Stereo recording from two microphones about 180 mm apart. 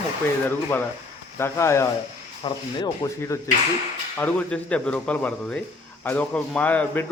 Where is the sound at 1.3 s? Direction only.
15° left (ahead or behind).